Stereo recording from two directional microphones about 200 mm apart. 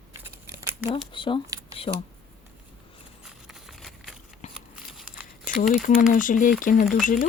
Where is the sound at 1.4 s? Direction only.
15° right (ahead or behind).